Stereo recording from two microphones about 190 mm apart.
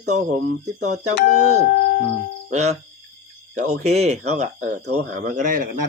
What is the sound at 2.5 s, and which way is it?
Speech, 35° right (ahead or behind).